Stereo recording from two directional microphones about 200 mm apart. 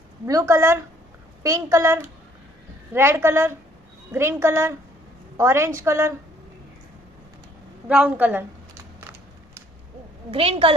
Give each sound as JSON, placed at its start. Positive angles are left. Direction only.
{"t": 0.3, "sound": "a woman's voice", "side_deg": -15}
{"t": 7.9, "sound": "a woman's voice", "side_deg": -5}
{"t": 10.3, "sound": "a woman's voice", "side_deg": -30}